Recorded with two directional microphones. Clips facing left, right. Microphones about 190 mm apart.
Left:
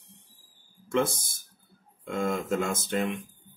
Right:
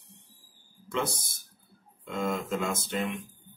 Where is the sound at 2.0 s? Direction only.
50° left (ahead or behind).